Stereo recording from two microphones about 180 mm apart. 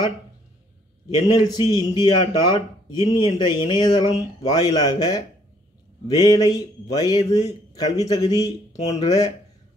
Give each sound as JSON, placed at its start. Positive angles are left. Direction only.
{"t": 1.2, "sound": "speech", "side_deg": 20}